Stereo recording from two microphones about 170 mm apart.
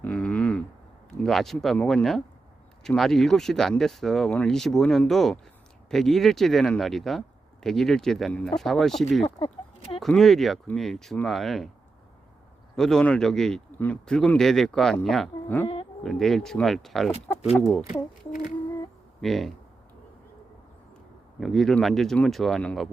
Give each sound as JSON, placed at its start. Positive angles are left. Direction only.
{"t": 0.0, "sound": "a sound", "side_deg": 5}
{"t": 1.2, "sound": "speech", "side_deg": 0}
{"t": 9.2, "sound": "speech", "side_deg": 35}
{"t": 10.0, "sound": "speech", "side_deg": 0}
{"t": 12.7, "sound": "speech", "side_deg": 5}
{"t": 15.6, "sound": "insect", "side_deg": 35}
{"t": 16.0, "sound": "speech", "side_deg": 0}
{"t": 19.2, "sound": "speech", "side_deg": 0}
{"t": 21.4, "sound": "speech", "side_deg": 0}